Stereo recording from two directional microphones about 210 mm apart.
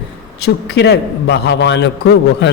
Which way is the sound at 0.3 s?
50° left (ahead or behind).